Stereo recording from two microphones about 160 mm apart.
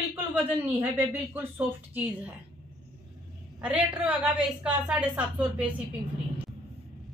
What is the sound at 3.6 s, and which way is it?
Speech, 10° right (ahead or behind).